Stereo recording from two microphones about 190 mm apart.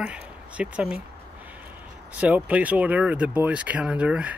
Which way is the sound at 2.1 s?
5° right (ahead or behind).